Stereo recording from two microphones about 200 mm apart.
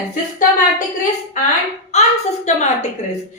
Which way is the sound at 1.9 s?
35° left (ahead or behind).